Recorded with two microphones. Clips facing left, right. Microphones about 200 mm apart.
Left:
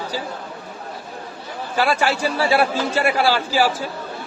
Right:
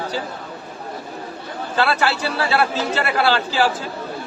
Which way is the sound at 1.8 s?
10° left (ahead or behind).